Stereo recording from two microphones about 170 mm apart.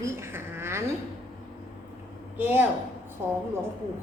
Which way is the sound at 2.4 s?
10° right (ahead or behind).